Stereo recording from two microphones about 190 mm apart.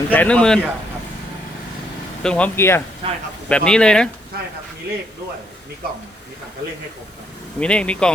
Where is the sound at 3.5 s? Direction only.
5° left (ahead or behind).